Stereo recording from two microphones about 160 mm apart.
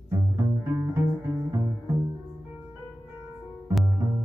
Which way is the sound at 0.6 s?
15° right (ahead or behind).